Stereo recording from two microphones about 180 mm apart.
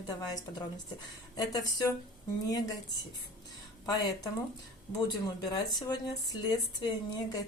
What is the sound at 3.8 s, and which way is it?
Speech, 20° left (ahead or behind).